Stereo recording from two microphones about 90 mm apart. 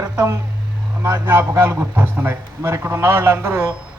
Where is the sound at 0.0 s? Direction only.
40° right (ahead or behind).